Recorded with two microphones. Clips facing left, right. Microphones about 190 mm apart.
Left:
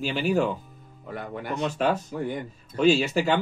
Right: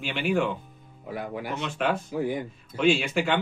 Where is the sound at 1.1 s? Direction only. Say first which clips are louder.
Even; 5° right (ahead or behind).